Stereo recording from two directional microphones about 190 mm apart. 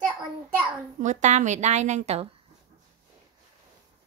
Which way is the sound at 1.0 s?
40° right (ahead or behind).